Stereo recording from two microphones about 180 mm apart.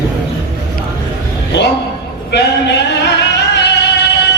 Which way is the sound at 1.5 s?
70° left (ahead or behind).